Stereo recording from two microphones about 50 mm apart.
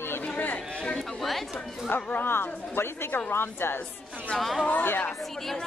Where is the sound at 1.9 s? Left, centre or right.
Left.